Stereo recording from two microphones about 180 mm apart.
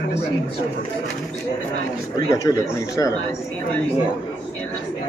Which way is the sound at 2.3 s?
15° left (ahead or behind).